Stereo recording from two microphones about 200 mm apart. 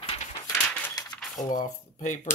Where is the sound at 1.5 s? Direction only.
40° left (ahead or behind).